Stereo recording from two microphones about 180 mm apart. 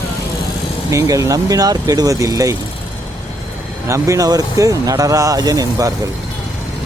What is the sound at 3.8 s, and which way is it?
Speech, 15° right (ahead or behind).